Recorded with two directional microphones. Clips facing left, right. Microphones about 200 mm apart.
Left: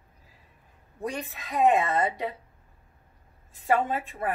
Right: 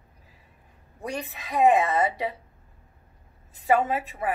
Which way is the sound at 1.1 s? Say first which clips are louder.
Right 3 dB; centre (ahead or behind).